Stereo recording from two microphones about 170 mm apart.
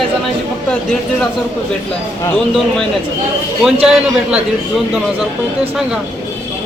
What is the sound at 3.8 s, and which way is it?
Speech, 5° right (ahead or behind).